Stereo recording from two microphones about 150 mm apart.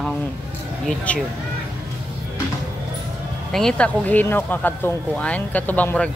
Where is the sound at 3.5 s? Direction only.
5° left (ahead or behind).